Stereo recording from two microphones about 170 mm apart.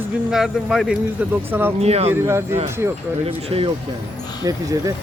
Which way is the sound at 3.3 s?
35° right (ahead or behind).